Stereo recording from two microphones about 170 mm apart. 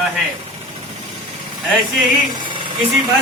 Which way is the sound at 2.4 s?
30° right (ahead or behind).